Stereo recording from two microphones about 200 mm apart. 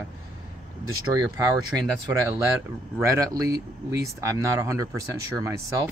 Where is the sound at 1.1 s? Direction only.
20° right (ahead or behind).